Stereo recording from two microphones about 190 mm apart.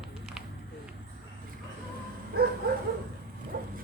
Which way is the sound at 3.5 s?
50° right (ahead or behind).